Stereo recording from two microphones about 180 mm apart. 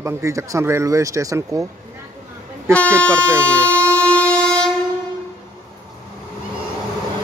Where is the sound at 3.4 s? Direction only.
10° left (ahead or behind).